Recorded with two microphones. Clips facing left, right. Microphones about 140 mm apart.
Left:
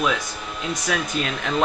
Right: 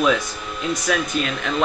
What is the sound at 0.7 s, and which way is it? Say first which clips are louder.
Speech: right 3 dB; 25° left (ahead or behind).